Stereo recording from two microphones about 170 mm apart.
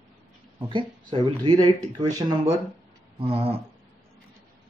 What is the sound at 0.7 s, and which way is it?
Speech, 30° right (ahead or behind).